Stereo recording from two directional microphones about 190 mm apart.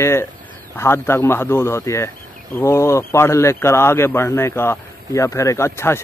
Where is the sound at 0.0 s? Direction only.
15° left (ahead or behind).